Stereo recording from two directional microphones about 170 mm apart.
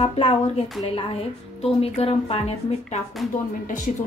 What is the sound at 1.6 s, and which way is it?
Speech, 35° left (ahead or behind).